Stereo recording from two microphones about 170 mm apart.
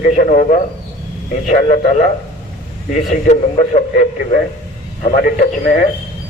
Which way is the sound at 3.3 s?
40° left (ahead or behind).